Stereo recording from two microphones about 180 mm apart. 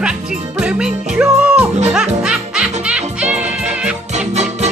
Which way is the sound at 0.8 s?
5° right (ahead or behind).